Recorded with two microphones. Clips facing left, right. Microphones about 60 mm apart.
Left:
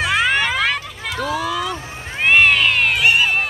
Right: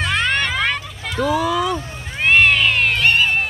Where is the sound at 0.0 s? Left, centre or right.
Centre.